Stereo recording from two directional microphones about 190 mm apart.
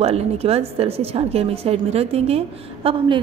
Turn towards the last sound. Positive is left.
turn(degrees=-30)  # may be behind; listen again after turning